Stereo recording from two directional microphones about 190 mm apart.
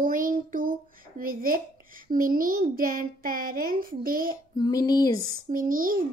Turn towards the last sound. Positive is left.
turn(degrees=-45)  # may be behind; listen again after turning